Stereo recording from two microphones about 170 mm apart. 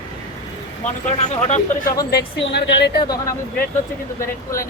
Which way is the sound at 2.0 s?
70° left (ahead or behind).